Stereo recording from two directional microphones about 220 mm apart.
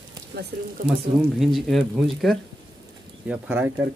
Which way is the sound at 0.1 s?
50° right (ahead or behind).